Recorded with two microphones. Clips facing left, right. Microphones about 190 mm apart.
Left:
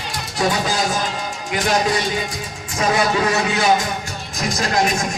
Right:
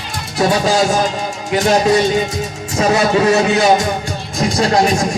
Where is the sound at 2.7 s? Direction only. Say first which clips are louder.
Right 5 dB; 30° right (ahead or behind).